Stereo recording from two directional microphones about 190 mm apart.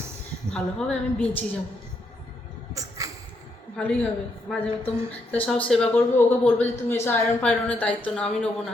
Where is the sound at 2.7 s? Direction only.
15° right (ahead or behind).